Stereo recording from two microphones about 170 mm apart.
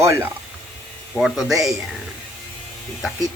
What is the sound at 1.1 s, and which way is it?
Speech, centre (ahead or behind).